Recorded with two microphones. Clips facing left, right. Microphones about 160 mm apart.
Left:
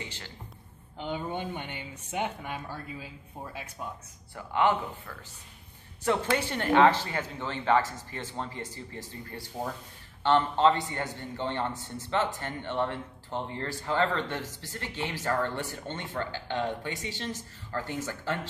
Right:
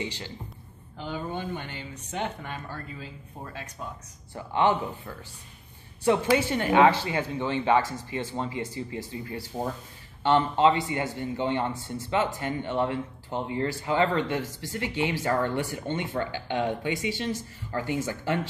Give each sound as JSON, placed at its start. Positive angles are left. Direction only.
{"t": 0.9, "sound": "speech", "side_deg": 20}
{"t": 4.4, "sound": "speech", "side_deg": -25}
{"t": 6.0, "sound": "a man's voice", "side_deg": -10}